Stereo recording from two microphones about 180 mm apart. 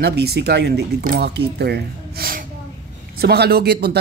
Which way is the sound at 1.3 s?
65° right (ahead or behind).